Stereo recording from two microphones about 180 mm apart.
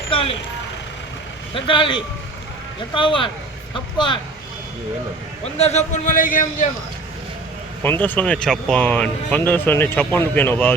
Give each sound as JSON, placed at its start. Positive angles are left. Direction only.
{"t": 0.1, "sound": "vehicle", "side_deg": 30}
{"t": 1.5, "sound": "a man's voice", "side_deg": 30}
{"t": 5.5, "sound": "a man's voice", "side_deg": 35}
{"t": 7.8, "sound": "speech", "side_deg": 10}